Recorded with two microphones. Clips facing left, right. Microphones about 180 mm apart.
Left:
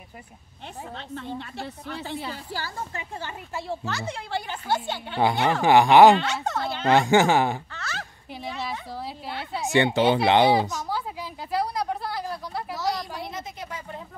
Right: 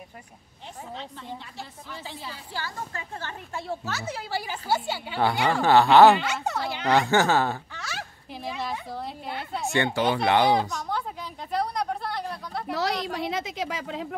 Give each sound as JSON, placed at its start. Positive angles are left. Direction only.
{"t": 0.9, "sound": "a woman's voice", "side_deg": 65}
{"t": 2.9, "sound": "speech", "side_deg": 15}
{"t": 3.5, "sound": "a woman's voice", "side_deg": 0}
{"t": 5.5, "sound": "speech", "side_deg": 15}
{"t": 6.1, "sound": "speech", "side_deg": -10}
{"t": 6.9, "sound": "speech", "side_deg": 15}
{"t": 7.7, "sound": "fowl", "side_deg": -10}
{"t": 8.6, "sound": "a woman's voice", "side_deg": 5}
{"t": 9.7, "sound": "speech", "side_deg": 20}
{"t": 10.7, "sound": "a woman's voice", "side_deg": 5}
{"t": 12.7, "sound": "a woman's voice", "side_deg": -70}